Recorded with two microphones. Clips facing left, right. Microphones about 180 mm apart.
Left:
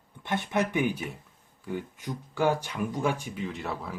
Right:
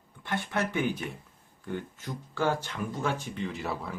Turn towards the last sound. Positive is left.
turn(degrees=0)  # may be behind; listen again after turning